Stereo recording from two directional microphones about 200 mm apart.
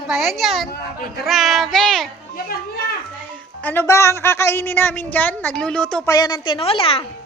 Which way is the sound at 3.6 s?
10° left (ahead or behind).